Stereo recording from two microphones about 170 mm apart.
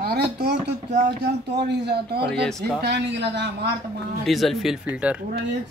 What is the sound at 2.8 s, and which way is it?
Speech, 80° right.